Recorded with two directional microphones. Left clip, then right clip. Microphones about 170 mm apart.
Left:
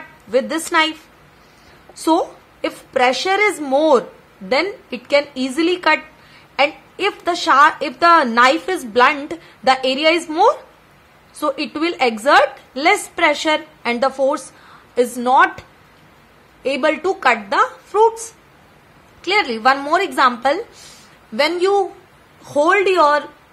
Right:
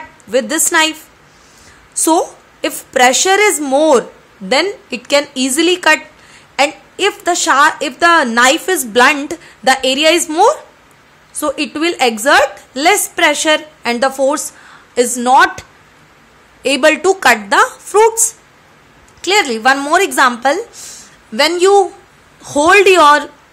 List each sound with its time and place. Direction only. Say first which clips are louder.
0.3 s a woman's voice: right 4 dB; 15° right (ahead or behind)
2.0 s a woman's voice: right 4 dB; 20° right (ahead or behind)
16.6 s a woman's voice: right 7 dB; 25° right (ahead or behind)
19.2 s a woman's voice: right 4 dB; 25° right (ahead or behind)